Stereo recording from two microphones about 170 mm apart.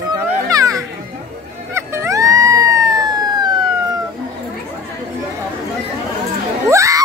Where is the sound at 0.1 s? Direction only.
20° right (ahead or behind).